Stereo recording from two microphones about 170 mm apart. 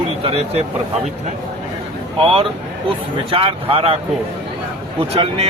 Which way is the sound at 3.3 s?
35° right (ahead or behind).